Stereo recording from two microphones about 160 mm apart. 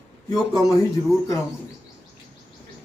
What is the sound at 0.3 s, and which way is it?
Speech, 25° left (ahead or behind).